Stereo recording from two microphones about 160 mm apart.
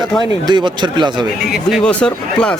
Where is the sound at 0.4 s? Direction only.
30° right (ahead or behind).